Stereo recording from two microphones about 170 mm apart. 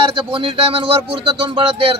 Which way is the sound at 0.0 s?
30° right (ahead or behind).